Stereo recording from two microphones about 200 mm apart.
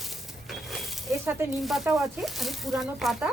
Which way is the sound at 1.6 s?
Centre (ahead or behind).